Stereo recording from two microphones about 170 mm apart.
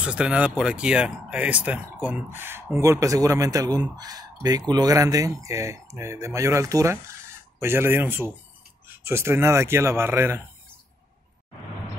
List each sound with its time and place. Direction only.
0.0 s speech: 5° right (ahead or behind)